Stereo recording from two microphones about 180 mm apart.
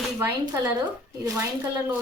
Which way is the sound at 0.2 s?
20° right (ahead or behind).